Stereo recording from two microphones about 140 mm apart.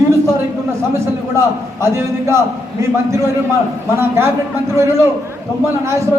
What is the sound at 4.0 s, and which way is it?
Speech, 15° right (ahead or behind).